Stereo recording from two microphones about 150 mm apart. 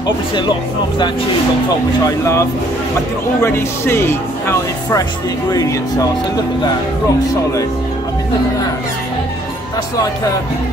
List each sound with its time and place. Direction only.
0.0 s speech: 30° left (ahead or behind)
2.0 s speech: 20° left (ahead or behind)
3.4 s speech: 15° left (ahead or behind)